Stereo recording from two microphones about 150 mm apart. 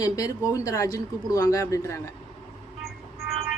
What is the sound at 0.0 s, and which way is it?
A woman's voice, 20° left (ahead or behind).